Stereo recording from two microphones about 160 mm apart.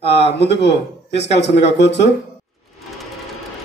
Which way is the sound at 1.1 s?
90° left.